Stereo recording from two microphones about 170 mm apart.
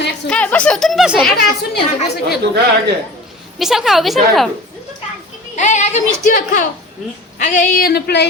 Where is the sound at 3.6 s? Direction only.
Centre (ahead or behind).